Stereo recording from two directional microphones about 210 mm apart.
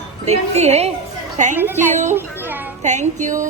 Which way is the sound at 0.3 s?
30° right (ahead or behind).